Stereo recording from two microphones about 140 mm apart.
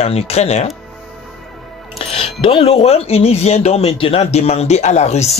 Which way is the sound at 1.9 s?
40° left (ahead or behind).